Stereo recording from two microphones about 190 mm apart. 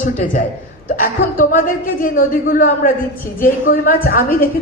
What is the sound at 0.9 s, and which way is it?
A woman's voice, 50° left (ahead or behind).